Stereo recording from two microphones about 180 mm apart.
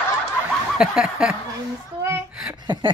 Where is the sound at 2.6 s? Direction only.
25° right (ahead or behind).